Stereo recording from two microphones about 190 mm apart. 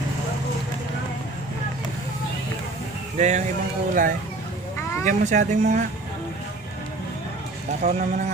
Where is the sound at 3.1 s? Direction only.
40° right (ahead or behind).